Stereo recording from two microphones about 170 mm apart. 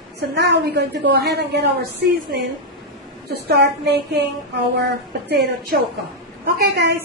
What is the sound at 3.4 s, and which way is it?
Speech, 75° right (ahead or behind).